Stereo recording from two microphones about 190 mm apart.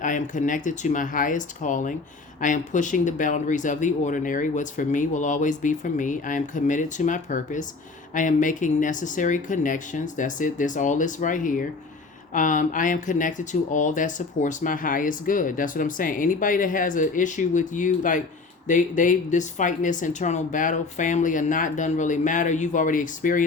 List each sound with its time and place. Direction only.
0.0 s speech: 45° left (ahead or behind)